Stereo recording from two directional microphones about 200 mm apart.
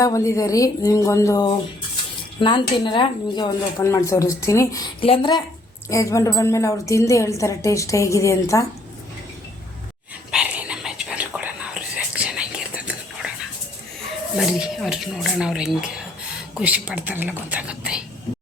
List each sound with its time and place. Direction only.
0.0 s a woman's voice: 15° left (ahead or behind)
10.3 s whispering: 5° right (ahead or behind)
14.3 s speech: 5° right (ahead or behind)